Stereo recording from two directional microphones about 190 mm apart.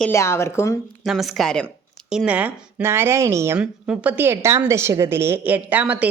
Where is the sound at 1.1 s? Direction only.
Centre (ahead or behind).